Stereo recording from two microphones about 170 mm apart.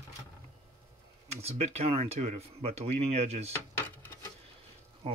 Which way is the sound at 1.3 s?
40° right (ahead or behind).